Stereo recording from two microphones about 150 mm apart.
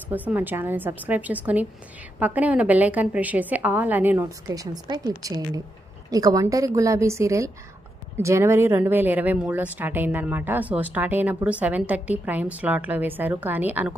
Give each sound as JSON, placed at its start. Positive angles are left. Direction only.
{"t": 0.1, "sound": "speech", "side_deg": -10}
{"t": 4.5, "sound": "a woman's voice", "side_deg": -25}